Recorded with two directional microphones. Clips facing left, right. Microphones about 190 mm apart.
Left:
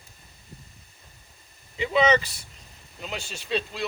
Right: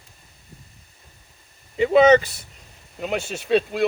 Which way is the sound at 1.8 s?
50° right (ahead or behind).